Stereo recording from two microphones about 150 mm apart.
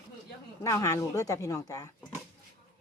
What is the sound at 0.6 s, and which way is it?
Speech, 20° left (ahead or behind).